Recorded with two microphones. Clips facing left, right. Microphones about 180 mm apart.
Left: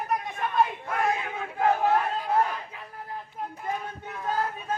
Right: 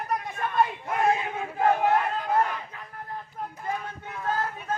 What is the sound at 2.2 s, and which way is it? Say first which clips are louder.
Crowd: even; 10° left (ahead or behind).